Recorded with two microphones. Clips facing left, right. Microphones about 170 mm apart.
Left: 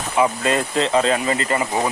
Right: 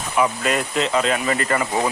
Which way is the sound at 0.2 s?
30° left (ahead or behind).